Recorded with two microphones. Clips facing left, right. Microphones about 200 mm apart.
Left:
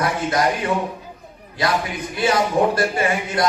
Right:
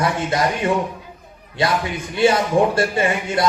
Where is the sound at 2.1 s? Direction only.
25° right (ahead or behind).